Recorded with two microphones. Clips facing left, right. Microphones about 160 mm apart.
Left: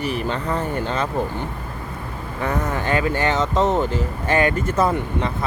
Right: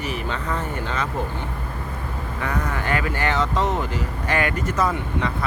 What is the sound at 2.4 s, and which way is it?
Speech, 25° left (ahead or behind).